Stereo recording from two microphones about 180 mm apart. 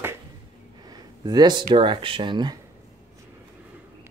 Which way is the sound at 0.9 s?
20° right (ahead or behind).